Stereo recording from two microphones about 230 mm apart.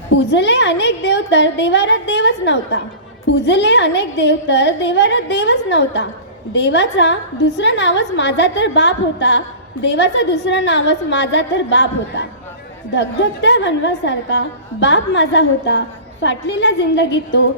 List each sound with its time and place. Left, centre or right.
0.1 s a woman's voice: left